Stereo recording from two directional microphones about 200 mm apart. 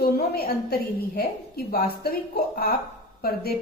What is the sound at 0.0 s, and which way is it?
A woman's voice, 50° left (ahead or behind).